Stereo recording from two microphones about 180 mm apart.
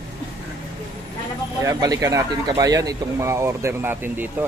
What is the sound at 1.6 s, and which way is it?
A man's voice, 20° right (ahead or behind).